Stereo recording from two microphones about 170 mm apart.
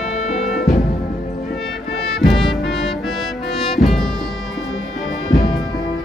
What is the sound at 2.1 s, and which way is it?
Music, centre (ahead or behind).